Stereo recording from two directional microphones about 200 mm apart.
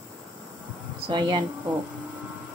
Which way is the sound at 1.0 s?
20° right (ahead or behind).